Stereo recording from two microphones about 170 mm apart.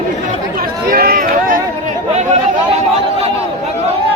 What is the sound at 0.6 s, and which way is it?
Run, 60° right (ahead or behind).